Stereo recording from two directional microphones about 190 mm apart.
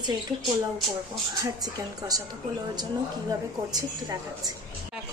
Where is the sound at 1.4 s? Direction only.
20° right (ahead or behind).